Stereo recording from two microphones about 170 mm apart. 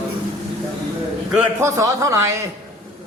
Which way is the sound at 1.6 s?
15° right (ahead or behind).